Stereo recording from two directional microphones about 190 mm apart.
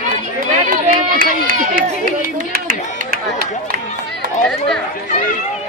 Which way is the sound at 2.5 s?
50° right (ahead or behind).